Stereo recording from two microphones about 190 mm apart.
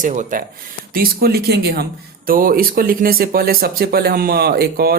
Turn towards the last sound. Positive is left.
turn(degrees=-55)  # may be behind; listen again after turning